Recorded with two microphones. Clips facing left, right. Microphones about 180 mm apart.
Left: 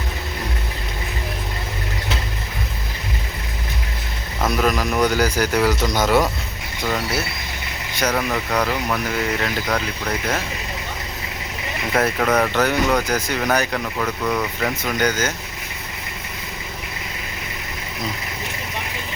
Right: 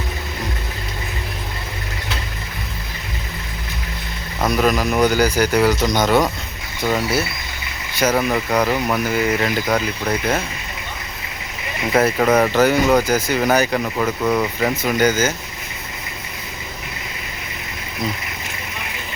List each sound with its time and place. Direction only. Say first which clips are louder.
4.4 s speech: right 2 dB; centre (ahead or behind)
7.9 s speech: right 4 dB; 5° right (ahead or behind)
11.9 s speech: right 4 dB; 5° right (ahead or behind)
13.8 s speech: right 4 dB; 15° right (ahead or behind)